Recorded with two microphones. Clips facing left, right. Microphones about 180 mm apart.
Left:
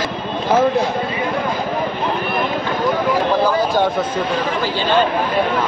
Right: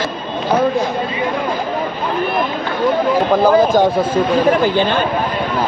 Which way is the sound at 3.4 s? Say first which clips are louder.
Right 6 dB; 50° right (ahead or behind).